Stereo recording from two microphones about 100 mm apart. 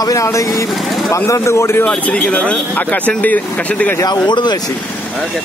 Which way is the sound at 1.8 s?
15° left (ahead or behind).